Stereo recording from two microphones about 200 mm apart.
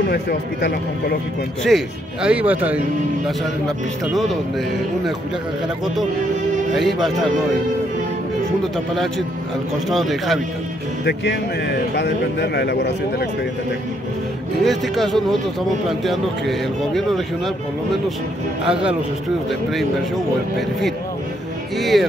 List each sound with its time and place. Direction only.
0.1 s speech: 50° left (ahead or behind)
1.7 s a man's voice: centre (ahead or behind)
6.7 s a man's voice: centre (ahead or behind)
8.7 s a man's voice: centre (ahead or behind)
11.1 s speech: 55° left (ahead or behind)
14.6 s a man's voice: centre (ahead or behind)
18.7 s a man's voice: 5° right (ahead or behind)
21.7 s a man's voice: centre (ahead or behind)